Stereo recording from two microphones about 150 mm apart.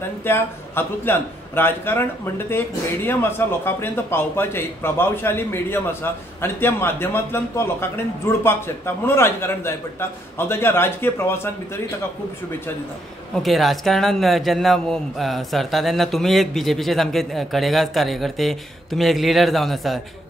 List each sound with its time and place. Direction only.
0.2 s a man's voice: 15° left (ahead or behind)
13.4 s a man's voice: centre (ahead or behind)